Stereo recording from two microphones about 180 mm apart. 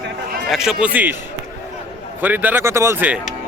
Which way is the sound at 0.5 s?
5° right (ahead or behind).